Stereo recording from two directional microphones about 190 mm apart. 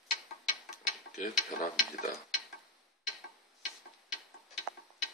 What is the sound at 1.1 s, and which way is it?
Stir, 45° left (ahead or behind).